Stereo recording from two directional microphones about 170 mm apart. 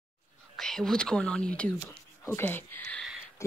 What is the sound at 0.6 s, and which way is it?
Speech, 5° left (ahead or behind).